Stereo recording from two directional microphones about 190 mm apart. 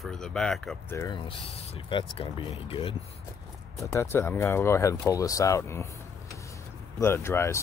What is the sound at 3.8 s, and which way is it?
Speech, 15° left (ahead or behind).